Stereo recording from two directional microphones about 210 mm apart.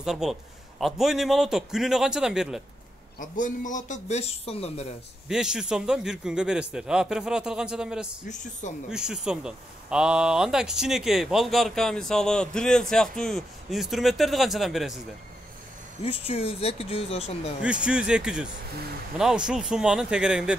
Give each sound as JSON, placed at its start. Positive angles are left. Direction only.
{"t": 0.0, "sound": "speech", "side_deg": 0}
{"t": 3.2, "sound": "speech", "side_deg": 40}
{"t": 5.3, "sound": "speech", "side_deg": -5}
{"t": 8.3, "sound": "speech", "side_deg": 35}
{"t": 8.9, "sound": "speech", "side_deg": -5}
{"t": 16.0, "sound": "speech", "side_deg": 30}
{"t": 17.6, "sound": "speech", "side_deg": -5}